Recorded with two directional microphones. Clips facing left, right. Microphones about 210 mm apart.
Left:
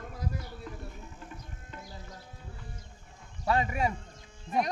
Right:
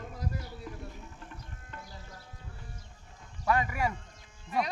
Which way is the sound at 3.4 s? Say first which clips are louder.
Left 1 dB; 25° left (ahead or behind).